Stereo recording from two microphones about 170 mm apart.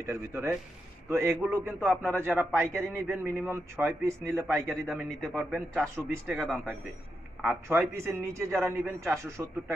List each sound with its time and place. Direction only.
0.0 s a man's voice: 15° right (ahead or behind)